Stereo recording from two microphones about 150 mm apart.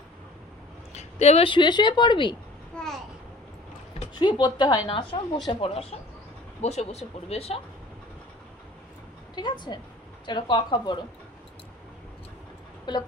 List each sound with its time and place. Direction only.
0.9 s speech: 45° left (ahead or behind)
2.8 s babbling: 5° left (ahead or behind)
4.1 s speech: 30° left (ahead or behind)
6.6 s speech: 45° left (ahead or behind)
9.3 s a woman's voice: 30° left (ahead or behind)
12.9 s speech: 30° left (ahead or behind)